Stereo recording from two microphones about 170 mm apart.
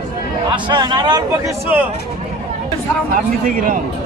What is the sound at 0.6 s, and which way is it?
Speech, 25° right (ahead or behind).